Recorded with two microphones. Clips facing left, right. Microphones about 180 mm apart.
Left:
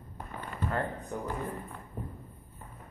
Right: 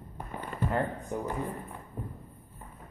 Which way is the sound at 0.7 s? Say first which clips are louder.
Right 2 dB; 15° right (ahead or behind).